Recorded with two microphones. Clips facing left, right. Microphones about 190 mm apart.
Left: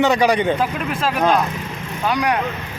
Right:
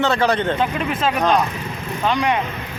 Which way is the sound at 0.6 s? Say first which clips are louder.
Right 1 dB; centre (ahead or behind).